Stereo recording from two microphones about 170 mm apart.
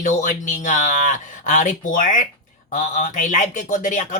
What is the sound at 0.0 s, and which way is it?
A man's voice, 50° left (ahead or behind).